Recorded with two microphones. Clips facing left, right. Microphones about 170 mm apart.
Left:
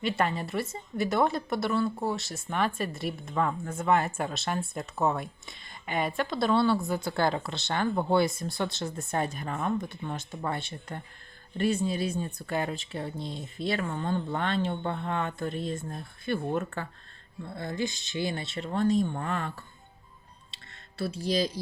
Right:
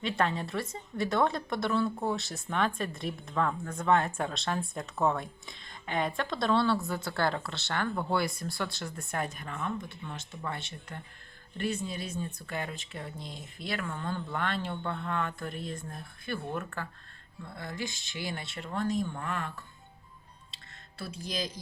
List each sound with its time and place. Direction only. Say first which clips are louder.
0.0 s a woman's voice: left 2 dB; 5° left (ahead or behind); by 16.8 s 25° left (ahead or behind)
17.8 s speech: left 6 dB; 50° right (ahead or behind)
18.2 s speech: left 6 dB; 25° left (ahead or behind)
21.0 s speech: left 8 dB; 35° left (ahead or behind)